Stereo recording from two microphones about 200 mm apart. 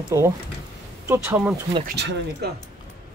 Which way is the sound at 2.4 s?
50° right (ahead or behind).